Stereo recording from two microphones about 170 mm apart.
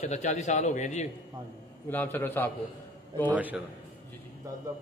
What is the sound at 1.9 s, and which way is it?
Speech, 10° left (ahead or behind).